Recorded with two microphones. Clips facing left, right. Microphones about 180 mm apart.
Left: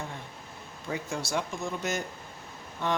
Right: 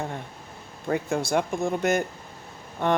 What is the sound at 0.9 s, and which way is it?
Speech, 55° right (ahead or behind).